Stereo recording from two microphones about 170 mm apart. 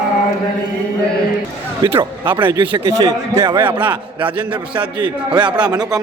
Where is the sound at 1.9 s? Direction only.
10° right (ahead or behind).